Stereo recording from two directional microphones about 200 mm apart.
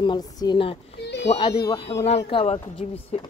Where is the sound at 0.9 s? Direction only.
60° left (ahead or behind).